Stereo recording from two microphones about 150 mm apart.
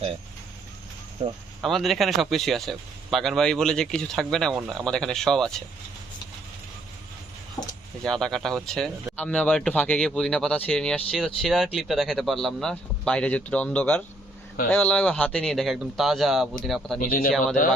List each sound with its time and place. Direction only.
1.2 s speech: 40° right (ahead or behind)
1.6 s speech: centre (ahead or behind)
4.5 s speech: 10° right (ahead or behind)
7.6 s a sound: 10° left (ahead or behind)
8.0 s speech: 5° left (ahead or behind)
17.0 s a man's voice: 70° left (ahead or behind)
17.3 s speech: 5° left (ahead or behind)